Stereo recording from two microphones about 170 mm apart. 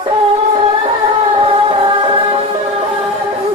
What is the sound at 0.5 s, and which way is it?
Music, 35° right (ahead or behind).